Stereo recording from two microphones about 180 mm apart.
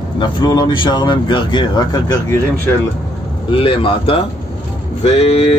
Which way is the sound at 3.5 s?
30° left (ahead or behind).